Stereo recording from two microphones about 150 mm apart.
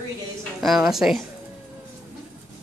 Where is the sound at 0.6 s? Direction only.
Centre (ahead or behind).